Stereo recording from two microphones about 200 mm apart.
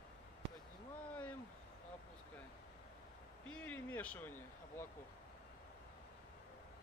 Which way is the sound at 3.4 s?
5° left (ahead or behind).